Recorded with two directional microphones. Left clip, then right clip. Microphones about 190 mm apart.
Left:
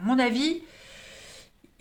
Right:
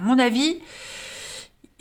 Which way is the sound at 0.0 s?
40° right (ahead or behind).